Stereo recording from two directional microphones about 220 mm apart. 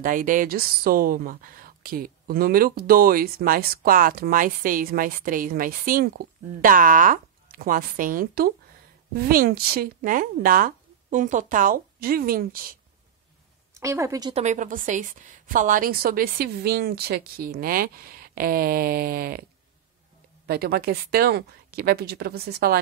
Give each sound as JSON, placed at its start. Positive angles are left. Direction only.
{"t": 0.0, "sound": "speech", "side_deg": -40}
{"t": 13.7, "sound": "a woman's voice", "side_deg": -15}
{"t": 14.3, "sound": "a woman's voice", "side_deg": -30}
{"t": 20.4, "sound": "a woman's voice", "side_deg": -45}